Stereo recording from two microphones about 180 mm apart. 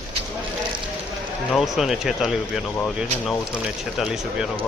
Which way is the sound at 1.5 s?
Centre (ahead or behind).